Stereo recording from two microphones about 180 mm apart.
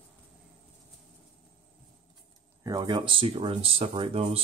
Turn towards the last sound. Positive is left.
turn(degrees=-30)  # may be behind; listen again after turning